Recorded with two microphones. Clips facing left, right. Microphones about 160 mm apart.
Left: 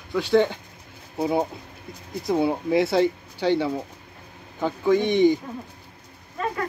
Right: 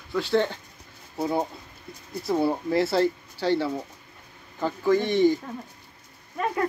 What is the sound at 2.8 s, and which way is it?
Speech, 20° left (ahead or behind).